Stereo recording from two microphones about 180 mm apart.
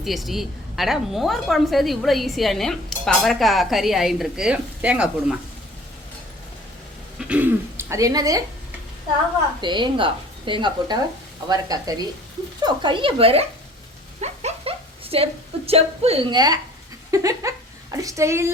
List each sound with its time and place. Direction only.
0.0 s a woman's voice: centre (ahead or behind)
7.2 s speech: 5° right (ahead or behind)
9.6 s a woman's voice: 25° right (ahead or behind)
17.1 s a sound: 20° right (ahead or behind)
17.9 s a woman's voice: 15° right (ahead or behind)